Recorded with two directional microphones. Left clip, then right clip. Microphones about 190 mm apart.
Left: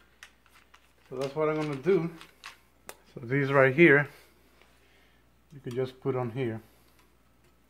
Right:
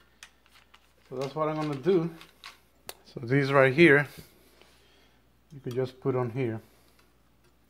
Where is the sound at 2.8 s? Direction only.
40° right (ahead or behind).